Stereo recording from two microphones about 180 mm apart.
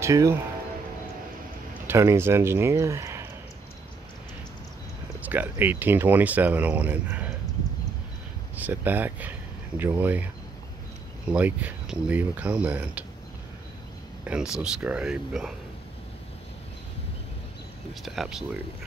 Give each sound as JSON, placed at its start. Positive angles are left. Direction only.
{"t": 0.0, "sound": "speech", "side_deg": -15}
{"t": 1.9, "sound": "speech", "side_deg": -15}
{"t": 5.2, "sound": "speech", "side_deg": -10}
{"t": 8.5, "sound": "speech", "side_deg": -10}
{"t": 14.2, "sound": "speech", "side_deg": -5}
{"t": 18.0, "sound": "speech", "side_deg": 0}